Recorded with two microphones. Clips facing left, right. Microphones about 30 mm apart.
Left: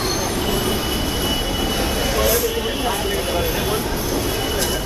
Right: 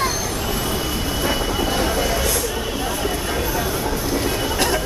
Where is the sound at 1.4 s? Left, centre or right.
Centre.